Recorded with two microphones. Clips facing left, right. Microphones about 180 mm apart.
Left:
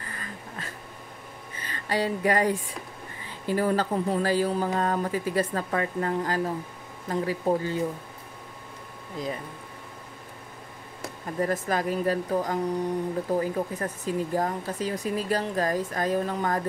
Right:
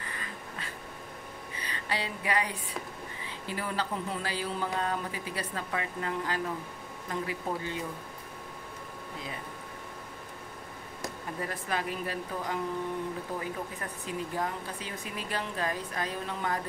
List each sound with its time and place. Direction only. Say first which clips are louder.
0.1 s a sound: left 2 dB; 45° left (ahead or behind)
1.5 s speech: left 6 dB; 45° left (ahead or behind)
11.3 s speech: left 9 dB; 45° left (ahead or behind)